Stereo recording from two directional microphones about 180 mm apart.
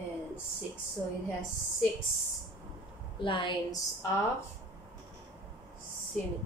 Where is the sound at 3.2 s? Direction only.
25° left (ahead or behind).